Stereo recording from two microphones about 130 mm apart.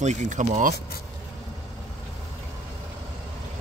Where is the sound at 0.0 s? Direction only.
65° right (ahead or behind).